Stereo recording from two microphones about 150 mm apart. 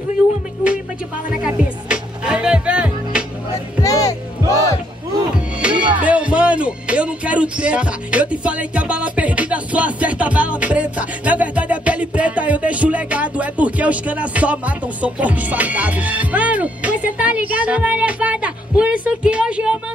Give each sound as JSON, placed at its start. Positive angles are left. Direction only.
{"t": 1.4, "sound": "music", "side_deg": -5}
{"t": 3.8, "sound": "music", "side_deg": 25}
{"t": 5.6, "sound": "music", "side_deg": -5}